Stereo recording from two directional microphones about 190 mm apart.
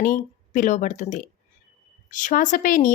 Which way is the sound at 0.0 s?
40° left (ahead or behind).